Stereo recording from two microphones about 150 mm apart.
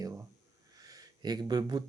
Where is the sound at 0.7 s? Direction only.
25° right (ahead or behind).